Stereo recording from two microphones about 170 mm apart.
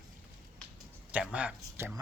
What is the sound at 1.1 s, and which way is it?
Speech, 10° right (ahead or behind).